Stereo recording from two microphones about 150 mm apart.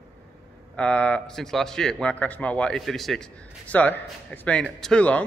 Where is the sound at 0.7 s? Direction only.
10° left (ahead or behind).